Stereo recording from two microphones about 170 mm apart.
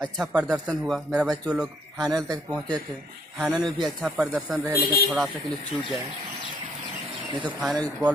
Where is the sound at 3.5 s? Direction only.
25° right (ahead or behind).